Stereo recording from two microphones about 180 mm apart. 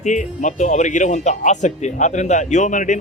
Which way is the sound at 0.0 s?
45° left (ahead or behind).